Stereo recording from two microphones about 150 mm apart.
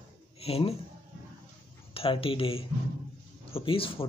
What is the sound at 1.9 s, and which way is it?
Speech, 35° left (ahead or behind).